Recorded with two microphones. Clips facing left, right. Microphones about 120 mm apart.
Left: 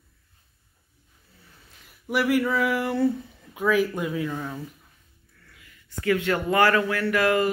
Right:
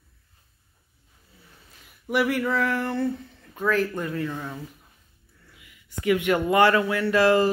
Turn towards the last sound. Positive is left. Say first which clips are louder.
# right 3 dB
turn(degrees=-30)  # may be behind; listen again after turning